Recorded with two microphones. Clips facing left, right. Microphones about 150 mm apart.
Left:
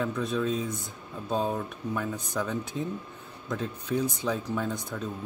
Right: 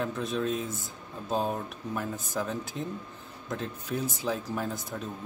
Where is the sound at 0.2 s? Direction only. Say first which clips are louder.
Left 2 dB; centre (ahead or behind).